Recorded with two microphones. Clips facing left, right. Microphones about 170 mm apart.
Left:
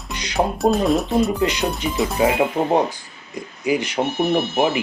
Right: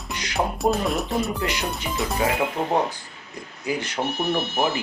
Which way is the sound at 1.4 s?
20° left (ahead or behind).